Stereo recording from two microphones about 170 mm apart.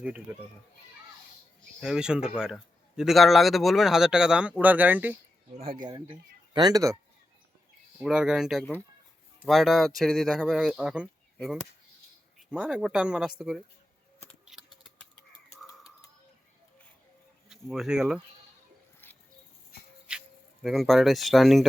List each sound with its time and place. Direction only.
1.8 s a man's voice: 5° right (ahead or behind)
6.5 s speech: 25° right (ahead or behind)
7.9 s a man's voice: 5° right (ahead or behind)
12.5 s a man's voice: 5° right (ahead or behind)
14.5 s a sound: centre (ahead or behind)
17.5 s speech: 5° right (ahead or behind)
19.0 s a sound: 10° left (ahead or behind)
20.1 s speech: 5° right (ahead or behind)